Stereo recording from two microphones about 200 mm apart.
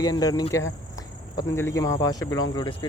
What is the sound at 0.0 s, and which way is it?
Speech, 20° left (ahead or behind).